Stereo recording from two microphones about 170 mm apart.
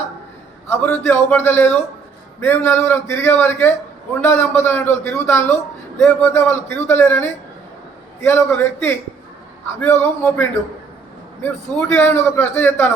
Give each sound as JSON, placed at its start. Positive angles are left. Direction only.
{"t": 0.7, "sound": "a man's voice", "side_deg": 10}